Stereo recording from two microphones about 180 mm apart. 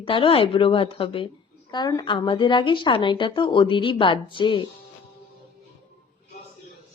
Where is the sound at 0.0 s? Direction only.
30° left (ahead or behind).